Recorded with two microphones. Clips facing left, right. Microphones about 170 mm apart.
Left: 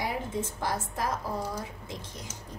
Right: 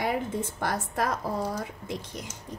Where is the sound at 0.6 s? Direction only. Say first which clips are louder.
Right 4 dB; 65° right (ahead or behind).